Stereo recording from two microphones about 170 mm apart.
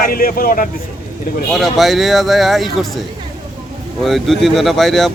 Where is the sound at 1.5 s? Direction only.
Centre (ahead or behind).